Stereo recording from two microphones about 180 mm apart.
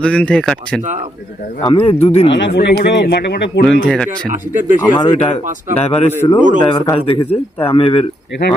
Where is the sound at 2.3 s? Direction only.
70° left (ahead or behind).